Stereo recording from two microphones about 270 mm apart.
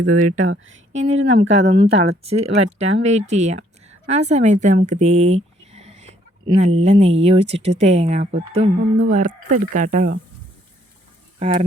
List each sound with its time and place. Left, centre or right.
0.0 s speech: right
0.9 s speech: right
11.3 s speech: right